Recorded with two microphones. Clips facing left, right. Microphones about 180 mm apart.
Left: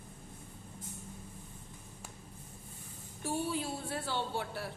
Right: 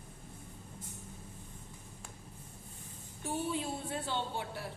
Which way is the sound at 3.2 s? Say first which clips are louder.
Left 1 dB; 20° right (ahead or behind).